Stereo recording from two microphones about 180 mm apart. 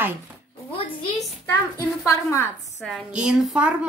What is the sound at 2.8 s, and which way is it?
Speech, centre (ahead or behind).